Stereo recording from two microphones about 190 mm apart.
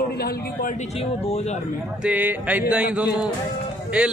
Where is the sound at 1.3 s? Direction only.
35° left (ahead or behind).